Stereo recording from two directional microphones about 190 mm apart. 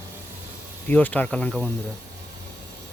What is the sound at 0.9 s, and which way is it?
Speech, 10° left (ahead or behind).